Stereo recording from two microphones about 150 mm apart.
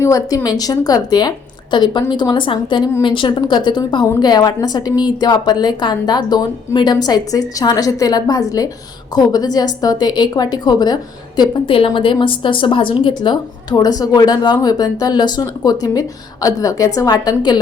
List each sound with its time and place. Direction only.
0.0 s a woman's voice: 25° left (ahead or behind)